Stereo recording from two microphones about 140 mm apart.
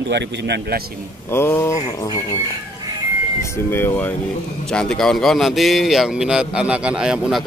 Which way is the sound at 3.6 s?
15° left (ahead or behind).